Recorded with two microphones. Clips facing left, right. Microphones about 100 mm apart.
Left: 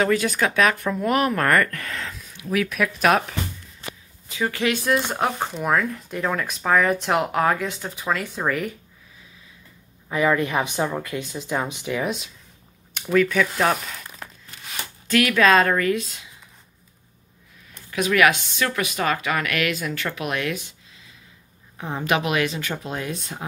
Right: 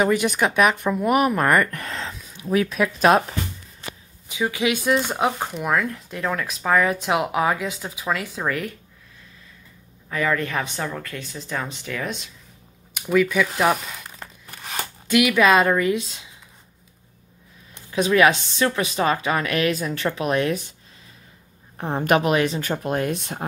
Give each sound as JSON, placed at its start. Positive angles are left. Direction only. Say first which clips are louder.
{"t": 0.0, "sound": "speech", "louder": "right 1 dB", "side_deg": -15}
{"t": 4.3, "sound": "speech", "louder": "right 1 dB", "side_deg": -10}
{"t": 10.0, "sound": "speech", "louder": "left 3 dB", "side_deg": 15}
{"t": 12.9, "sound": "speech", "louder": "even", "side_deg": -10}
{"t": 15.0, "sound": "speech", "louder": "right 1 dB", "side_deg": -15}
{"t": 17.9, "sound": "speech", "louder": "right 2 dB", "side_deg": -30}
{"t": 21.7, "sound": "speech", "louder": "right 4 dB", "side_deg": -45}